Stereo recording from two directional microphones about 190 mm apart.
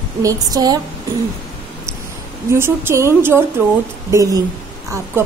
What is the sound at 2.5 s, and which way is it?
A woman's voice, 15° right (ahead or behind).